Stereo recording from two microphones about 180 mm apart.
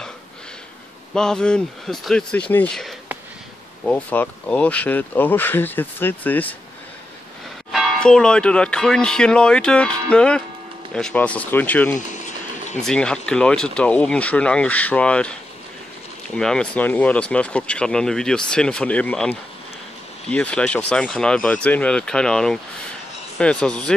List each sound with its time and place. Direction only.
1.1 s speech: 5° left (ahead or behind)
7.7 s speech: 5° left (ahead or behind)
12.2 s a sound: 45° left (ahead or behind)
12.8 s speech: 5° left (ahead or behind)
16.3 s speech: 5° left (ahead or behind)